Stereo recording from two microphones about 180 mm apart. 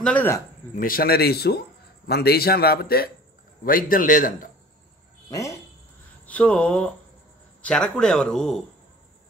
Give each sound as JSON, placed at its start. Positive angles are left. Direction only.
{"t": 0.0, "sound": "speech", "side_deg": 10}
{"t": 0.7, "sound": "a man's voice", "side_deg": 55}
{"t": 6.2, "sound": "speech", "side_deg": 5}